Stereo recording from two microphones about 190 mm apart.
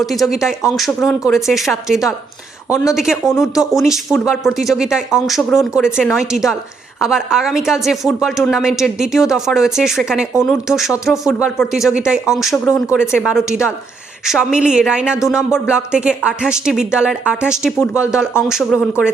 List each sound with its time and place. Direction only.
0.0 s a woman's voice: centre (ahead or behind)